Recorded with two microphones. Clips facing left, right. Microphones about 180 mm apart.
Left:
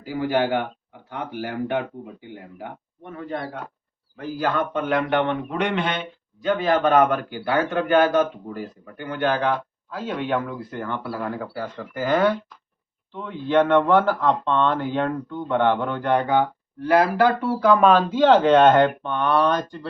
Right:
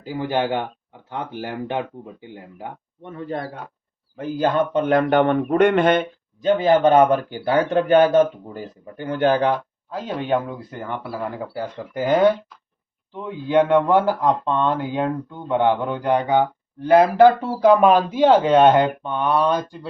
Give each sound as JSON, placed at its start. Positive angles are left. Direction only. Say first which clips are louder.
{"t": 0.0, "sound": "speech", "louder": "left 1 dB", "side_deg": -25}
{"t": 3.1, "sound": "speech", "louder": "right 3 dB", "side_deg": -30}
{"t": 4.4, "sound": "speech", "louder": "right 5 dB", "side_deg": -20}
{"t": 4.9, "sound": "speech", "louder": "right 5 dB", "side_deg": -40}
{"t": 6.4, "sound": "speech", "louder": "right 4 dB", "side_deg": -20}
{"t": 7.7, "sound": "speech", "louder": "right 5 dB", "side_deg": -35}
{"t": 8.0, "sound": "speech", "louder": "right 4 dB", "side_deg": -20}
{"t": 9.0, "sound": "speech", "louder": "right 5 dB", "side_deg": -40}
{"t": 9.9, "sound": "speech", "louder": "right 2 dB", "side_deg": -20}
{"t": 13.2, "sound": "speech", "louder": "right 1 dB", "side_deg": -15}
{"t": 17.9, "sound": "speech", "louder": "right 1 dB", "side_deg": -10}